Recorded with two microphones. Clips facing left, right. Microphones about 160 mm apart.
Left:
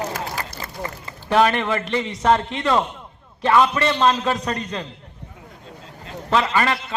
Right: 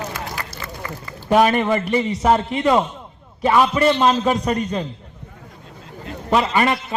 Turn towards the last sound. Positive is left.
turn(degrees=-15)  # may be behind; listen again after turning